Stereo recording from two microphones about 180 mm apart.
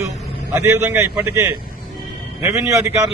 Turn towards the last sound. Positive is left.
turn(degrees=-20)  # may be behind; listen again after turning